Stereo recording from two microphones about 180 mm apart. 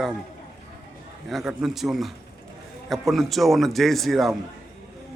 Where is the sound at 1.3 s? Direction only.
Centre (ahead or behind).